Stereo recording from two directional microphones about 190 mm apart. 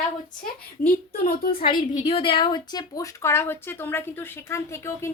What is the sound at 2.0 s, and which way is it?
Speech, 25° left (ahead or behind).